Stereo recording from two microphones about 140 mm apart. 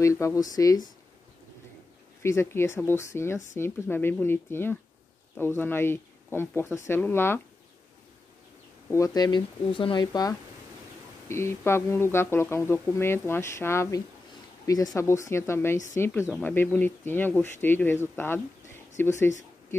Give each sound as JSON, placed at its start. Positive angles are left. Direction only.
{"t": 0.0, "sound": "speech", "side_deg": 20}
{"t": 2.2, "sound": "speech", "side_deg": 20}
{"t": 8.9, "sound": "speech", "side_deg": 25}
{"t": 11.2, "sound": "speech", "side_deg": 20}